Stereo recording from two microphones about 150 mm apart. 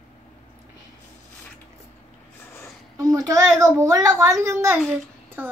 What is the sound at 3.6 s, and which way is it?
A child's voice, 25° right (ahead or behind).